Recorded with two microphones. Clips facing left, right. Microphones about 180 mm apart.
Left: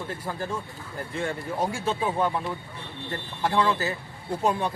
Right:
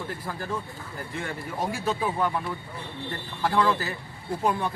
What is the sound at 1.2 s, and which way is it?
Speech, 25° left (ahead or behind).